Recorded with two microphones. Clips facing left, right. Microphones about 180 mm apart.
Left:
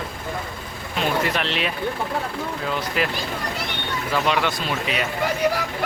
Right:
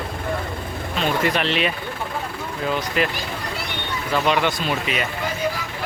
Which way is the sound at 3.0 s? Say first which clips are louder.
Right 2 dB; 5° left (ahead or behind).